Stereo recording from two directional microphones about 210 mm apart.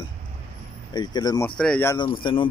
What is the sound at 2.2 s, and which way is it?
Speech, 25° left (ahead or behind).